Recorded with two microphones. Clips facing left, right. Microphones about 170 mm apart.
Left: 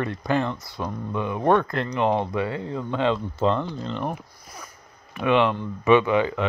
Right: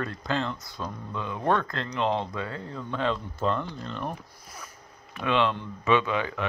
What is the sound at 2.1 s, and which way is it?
Speech, 60° left (ahead or behind).